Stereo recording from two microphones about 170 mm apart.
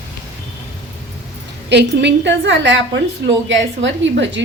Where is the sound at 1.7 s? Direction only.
90° right.